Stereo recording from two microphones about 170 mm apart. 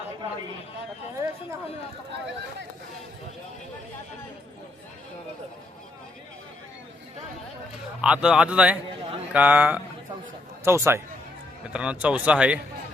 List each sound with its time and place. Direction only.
8.0 s a man's voice: 5° right (ahead or behind)